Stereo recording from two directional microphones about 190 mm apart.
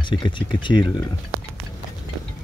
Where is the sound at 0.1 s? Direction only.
25° left (ahead or behind).